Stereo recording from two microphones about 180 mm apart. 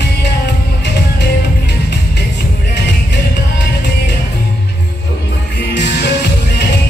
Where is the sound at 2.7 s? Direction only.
70° left (ahead or behind).